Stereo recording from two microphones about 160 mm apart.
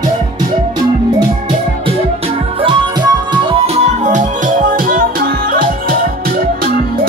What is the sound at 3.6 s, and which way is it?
Music, 45° right (ahead or behind).